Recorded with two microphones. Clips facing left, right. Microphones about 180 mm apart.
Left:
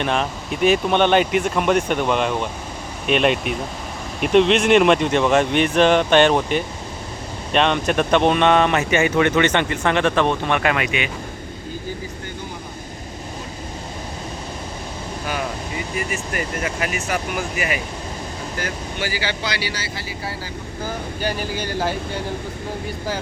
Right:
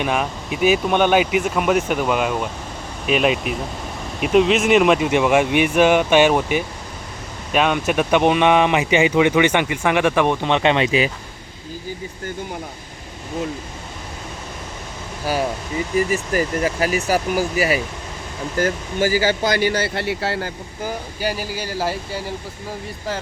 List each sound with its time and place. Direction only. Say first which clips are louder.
0.0 s speech: even; 5° right (ahead or behind); by 11.1 s 30° right (ahead or behind)
16.0 s speech: right 8 dB; 35° right (ahead or behind); by 20.5 s 70° right (ahead or behind)
21.2 s speech: even; 5° right (ahead or behind)